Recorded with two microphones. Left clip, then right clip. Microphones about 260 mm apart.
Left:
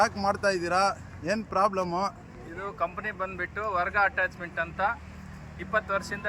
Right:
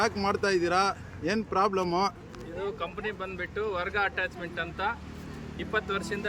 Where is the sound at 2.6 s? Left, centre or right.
Centre.